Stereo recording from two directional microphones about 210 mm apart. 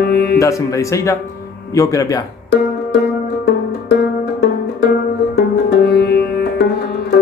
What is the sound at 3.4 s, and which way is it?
Music, 55° left (ahead or behind).